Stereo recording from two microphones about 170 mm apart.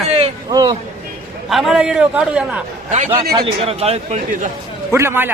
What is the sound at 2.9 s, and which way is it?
A man's voice, 40° right (ahead or behind).